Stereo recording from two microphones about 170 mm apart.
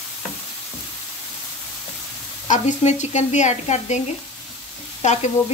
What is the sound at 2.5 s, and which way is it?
Speech, 45° left (ahead or behind).